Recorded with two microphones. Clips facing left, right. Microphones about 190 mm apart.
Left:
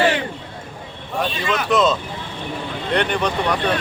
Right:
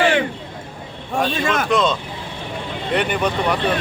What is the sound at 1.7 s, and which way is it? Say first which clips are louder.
Speech: left 1 dB; centre (ahead or behind).